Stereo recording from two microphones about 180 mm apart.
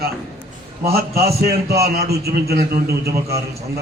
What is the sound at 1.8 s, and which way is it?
A man's voice, 60° right (ahead or behind).